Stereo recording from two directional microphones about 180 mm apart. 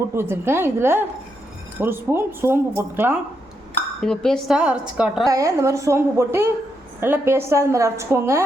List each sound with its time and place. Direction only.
0.1 s a woman's voice: 15° right (ahead or behind)
4.0 s a woman's voice: 5° left (ahead or behind)
5.3 s a woman's voice: 15° right (ahead or behind)